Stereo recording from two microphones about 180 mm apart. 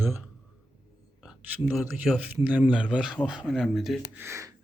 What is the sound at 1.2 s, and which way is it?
Speech, 5° right (ahead or behind).